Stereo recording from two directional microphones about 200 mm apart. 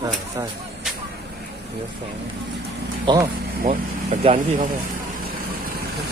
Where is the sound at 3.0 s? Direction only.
20° right (ahead or behind).